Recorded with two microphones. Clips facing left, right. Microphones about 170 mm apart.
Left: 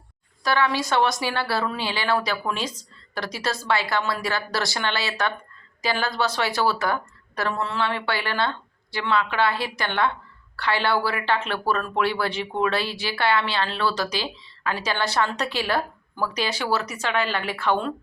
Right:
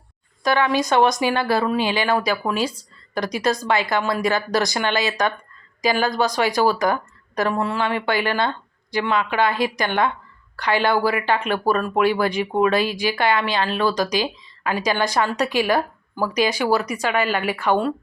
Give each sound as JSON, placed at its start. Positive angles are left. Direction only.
{"t": 0.4, "sound": "speech", "side_deg": -15}